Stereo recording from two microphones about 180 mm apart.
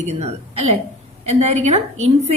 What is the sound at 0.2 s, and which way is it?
A woman's voice, 35° right (ahead or behind).